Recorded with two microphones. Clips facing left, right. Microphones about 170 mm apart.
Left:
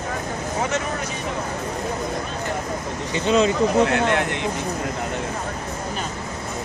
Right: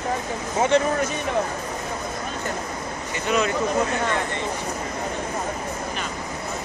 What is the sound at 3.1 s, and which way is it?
Speech, 25° left (ahead or behind).